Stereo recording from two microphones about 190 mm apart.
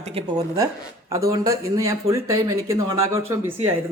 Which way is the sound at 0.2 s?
20° right (ahead or behind).